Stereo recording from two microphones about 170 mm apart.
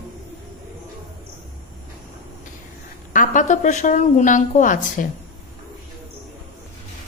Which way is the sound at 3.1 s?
50° left (ahead or behind).